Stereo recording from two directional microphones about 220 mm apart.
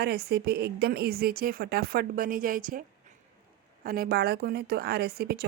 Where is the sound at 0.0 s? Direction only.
45° right (ahead or behind).